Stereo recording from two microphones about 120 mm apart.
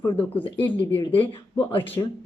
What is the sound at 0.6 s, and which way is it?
Speech, 15° left (ahead or behind).